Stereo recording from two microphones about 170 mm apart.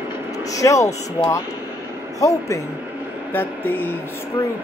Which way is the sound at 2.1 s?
20° left (ahead or behind).